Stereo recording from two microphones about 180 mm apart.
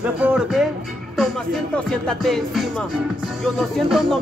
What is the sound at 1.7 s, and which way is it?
Music, 5° left (ahead or behind).